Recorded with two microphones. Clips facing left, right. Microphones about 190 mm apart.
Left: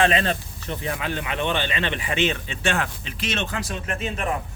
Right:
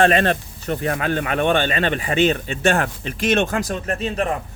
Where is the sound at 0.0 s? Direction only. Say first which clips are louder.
Right 5 dB; 55° right (ahead or behind).